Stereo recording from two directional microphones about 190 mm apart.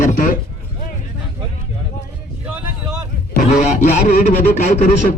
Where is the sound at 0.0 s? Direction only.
45° left (ahead or behind).